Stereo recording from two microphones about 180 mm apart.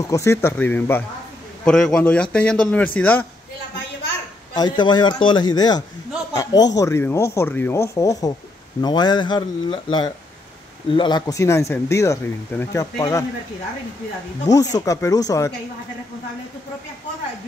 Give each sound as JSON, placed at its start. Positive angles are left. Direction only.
{"t": 0.1, "sound": "speech", "side_deg": 15}
{"t": 4.6, "sound": "a man's voice", "side_deg": 25}
{"t": 14.5, "sound": "a man's voice", "side_deg": 20}